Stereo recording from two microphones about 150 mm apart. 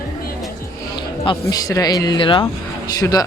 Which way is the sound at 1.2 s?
30° left (ahead or behind).